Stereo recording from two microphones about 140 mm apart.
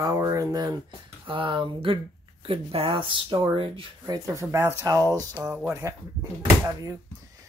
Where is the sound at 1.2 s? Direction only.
35° right (ahead or behind).